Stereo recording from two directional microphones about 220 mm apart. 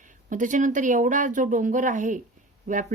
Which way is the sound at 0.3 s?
35° right (ahead or behind).